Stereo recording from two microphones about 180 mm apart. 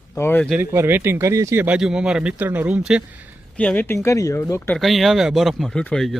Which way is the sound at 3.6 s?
10° left (ahead or behind).